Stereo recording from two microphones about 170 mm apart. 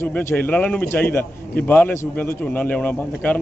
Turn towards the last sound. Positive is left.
turn(degrees=10)  # may be behind; listen again after turning